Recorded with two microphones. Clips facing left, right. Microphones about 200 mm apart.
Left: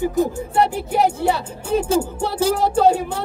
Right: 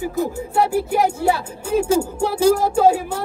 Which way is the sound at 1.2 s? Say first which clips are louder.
Even; 10° right (ahead or behind).